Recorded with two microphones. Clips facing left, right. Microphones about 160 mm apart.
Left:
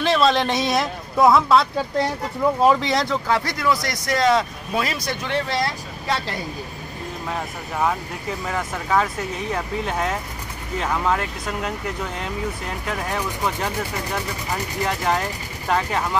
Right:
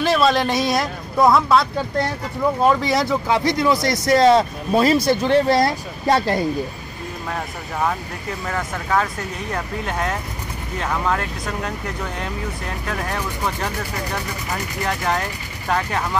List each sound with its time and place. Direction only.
0.0 s speech: 5° right (ahead or behind); by 6.4 s 45° right (ahead or behind)
8.5 s speech: 5° left (ahead or behind)
12.8 s speech: 5° left (ahead or behind)